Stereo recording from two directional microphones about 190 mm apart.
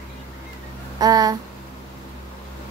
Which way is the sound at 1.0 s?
20° right (ahead or behind).